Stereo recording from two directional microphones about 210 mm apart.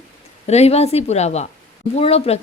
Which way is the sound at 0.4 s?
30° left (ahead or behind).